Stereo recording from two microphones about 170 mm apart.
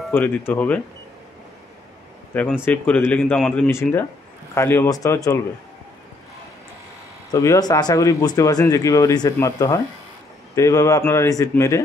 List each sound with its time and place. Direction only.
0.1 s speech: 10° left (ahead or behind)
2.6 s speech: 10° left (ahead or behind)
7.2 s speech: 20° left (ahead or behind)